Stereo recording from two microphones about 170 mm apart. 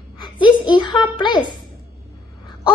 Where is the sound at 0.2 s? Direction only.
25° left (ahead or behind).